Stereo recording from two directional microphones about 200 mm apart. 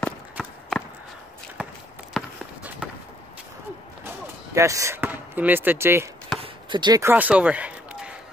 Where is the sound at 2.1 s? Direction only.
5° right (ahead or behind).